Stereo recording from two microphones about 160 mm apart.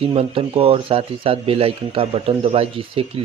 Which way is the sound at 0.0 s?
35° right (ahead or behind).